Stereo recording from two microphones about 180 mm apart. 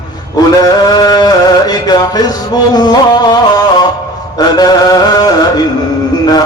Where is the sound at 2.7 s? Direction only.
20° left (ahead or behind).